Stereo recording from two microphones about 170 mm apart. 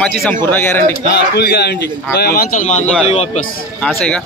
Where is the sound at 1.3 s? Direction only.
70° left (ahead or behind).